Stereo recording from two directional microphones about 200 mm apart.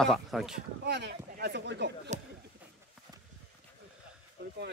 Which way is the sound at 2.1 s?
35° right (ahead or behind).